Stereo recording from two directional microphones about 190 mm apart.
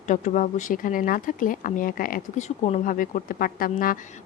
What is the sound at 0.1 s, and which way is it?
Speech, 45° left (ahead or behind).